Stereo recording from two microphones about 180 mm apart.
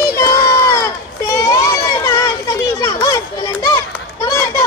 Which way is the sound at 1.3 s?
20° left (ahead or behind).